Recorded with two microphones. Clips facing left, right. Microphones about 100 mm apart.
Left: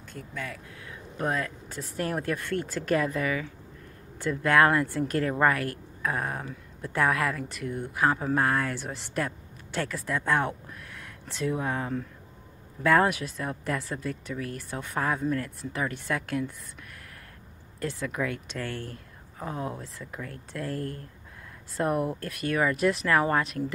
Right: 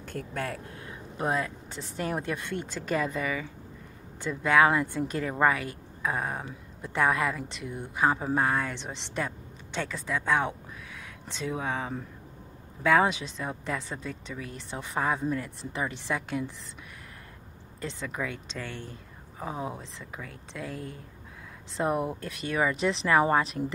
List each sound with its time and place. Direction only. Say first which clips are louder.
0.0 s speech: right 4 dB; 50° right (ahead or behind)
1.1 s speech: even; 15° right (ahead or behind)
1.7 s speech: left 1 dB; centre (ahead or behind)
2.3 s speech: left 3 dB; 15° right (ahead or behind)
2.6 s speech: left 3 dB; 5° left (ahead or behind)
2.9 s speech: left 3 dB; 5° right (ahead or behind)
11.4 s speech: left 2 dB; 5° right (ahead or behind)
13.7 s speech: left 3 dB; 5° left (ahead or behind)
18.0 s speech: left 3 dB; 5° right (ahead or behind)
18.6 s speech: left 4 dB; 15° right (ahead or behind)